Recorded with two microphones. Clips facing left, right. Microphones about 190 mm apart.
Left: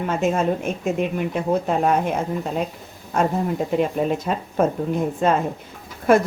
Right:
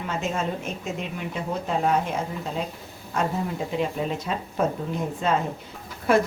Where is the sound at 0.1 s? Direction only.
55° left (ahead or behind).